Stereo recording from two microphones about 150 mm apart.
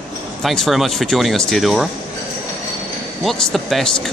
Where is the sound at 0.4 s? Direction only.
Centre (ahead or behind).